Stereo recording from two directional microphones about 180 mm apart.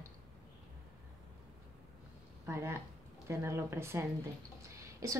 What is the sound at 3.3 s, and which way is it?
Speech, 15° right (ahead or behind).